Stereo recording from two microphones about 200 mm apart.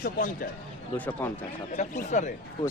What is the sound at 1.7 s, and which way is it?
Speech, 40° left (ahead or behind).